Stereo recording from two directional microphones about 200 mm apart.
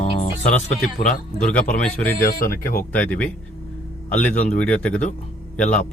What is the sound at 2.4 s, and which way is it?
Speech, 45° left (ahead or behind).